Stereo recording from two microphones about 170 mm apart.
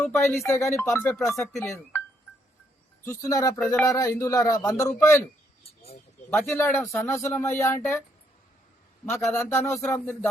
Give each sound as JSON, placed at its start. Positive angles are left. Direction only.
{"t": 0.0, "sound": "speech", "side_deg": 15}
{"t": 1.4, "sound": "speech", "side_deg": 0}
{"t": 3.0, "sound": "speech", "side_deg": 20}
{"t": 6.3, "sound": "speech", "side_deg": 10}
{"t": 9.0, "sound": "speech", "side_deg": 10}